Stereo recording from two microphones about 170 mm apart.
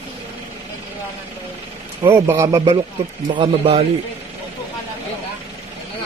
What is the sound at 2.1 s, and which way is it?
Speech, 15° right (ahead or behind).